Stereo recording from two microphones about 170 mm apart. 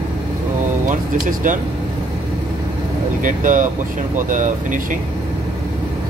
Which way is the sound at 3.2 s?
50° right (ahead or behind).